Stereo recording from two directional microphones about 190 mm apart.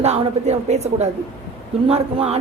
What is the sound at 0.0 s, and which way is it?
A woman's voice, 35° right (ahead or behind).